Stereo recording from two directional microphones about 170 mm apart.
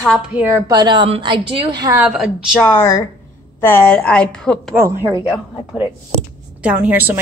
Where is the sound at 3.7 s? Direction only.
10° left (ahead or behind).